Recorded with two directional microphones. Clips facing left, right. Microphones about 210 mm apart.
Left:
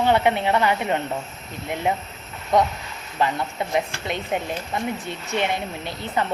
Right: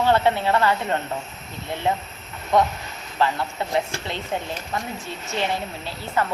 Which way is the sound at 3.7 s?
15° left (ahead or behind).